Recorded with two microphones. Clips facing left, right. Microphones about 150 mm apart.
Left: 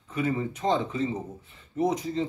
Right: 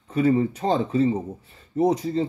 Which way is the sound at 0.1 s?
35° right (ahead or behind).